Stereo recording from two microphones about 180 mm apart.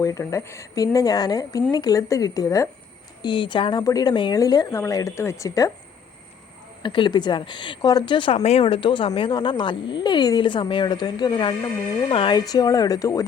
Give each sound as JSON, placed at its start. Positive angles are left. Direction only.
{"t": 0.0, "sound": "a woman's voice", "side_deg": 20}
{"t": 6.8, "sound": "a woman's voice", "side_deg": 25}